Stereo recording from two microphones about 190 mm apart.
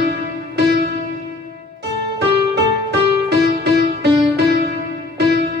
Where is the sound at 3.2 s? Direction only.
60° right (ahead or behind).